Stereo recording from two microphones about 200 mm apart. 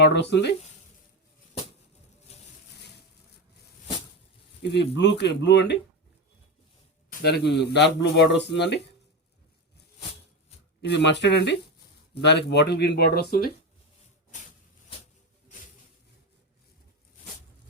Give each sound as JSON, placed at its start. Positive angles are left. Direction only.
{"t": 0.1, "sound": "speech", "side_deg": 60}
{"t": 4.6, "sound": "speech", "side_deg": 60}
{"t": 7.1, "sound": "speech", "side_deg": 50}
{"t": 10.8, "sound": "speech", "side_deg": 60}